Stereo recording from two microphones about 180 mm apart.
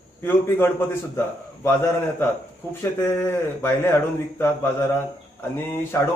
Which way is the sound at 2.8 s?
15° left (ahead or behind).